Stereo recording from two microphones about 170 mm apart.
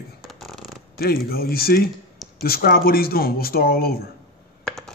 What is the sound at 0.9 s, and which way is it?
Speech, 65° left (ahead or behind).